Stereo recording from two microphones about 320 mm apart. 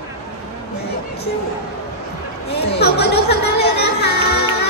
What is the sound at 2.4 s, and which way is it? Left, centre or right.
Chatter, left.